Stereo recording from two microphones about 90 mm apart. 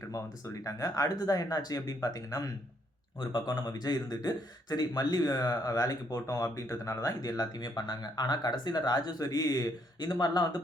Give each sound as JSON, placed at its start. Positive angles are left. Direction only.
{"t": 0.6, "sound": "speech", "side_deg": 40}
{"t": 3.2, "sound": "a man's voice", "side_deg": 55}